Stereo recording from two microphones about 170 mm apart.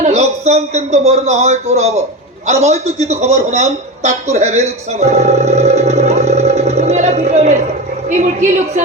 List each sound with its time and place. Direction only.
0.0 s a man's voice: 40° right (ahead or behind)